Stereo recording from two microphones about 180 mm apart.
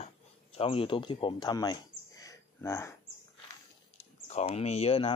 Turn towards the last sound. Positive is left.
turn(degrees=35)  # may be behind; listen again after turning